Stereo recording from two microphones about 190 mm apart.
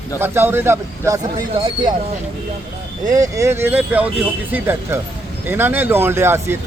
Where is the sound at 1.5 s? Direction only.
25° right (ahead or behind).